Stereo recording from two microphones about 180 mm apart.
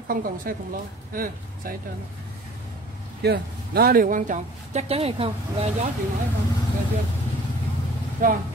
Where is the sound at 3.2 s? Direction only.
60° right (ahead or behind); by 5.3 s 35° right (ahead or behind).